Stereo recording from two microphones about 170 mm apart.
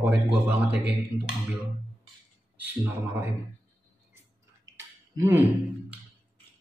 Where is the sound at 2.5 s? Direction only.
10° right (ahead or behind).